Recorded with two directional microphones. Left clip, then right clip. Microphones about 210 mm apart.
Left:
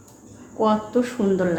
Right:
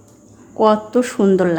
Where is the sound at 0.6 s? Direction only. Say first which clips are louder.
Right 6 dB; 55° right (ahead or behind).